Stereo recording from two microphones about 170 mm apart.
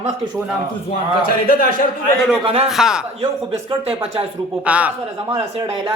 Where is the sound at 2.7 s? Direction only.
5° right (ahead or behind).